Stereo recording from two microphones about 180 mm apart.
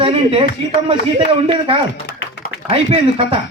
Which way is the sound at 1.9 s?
80° left.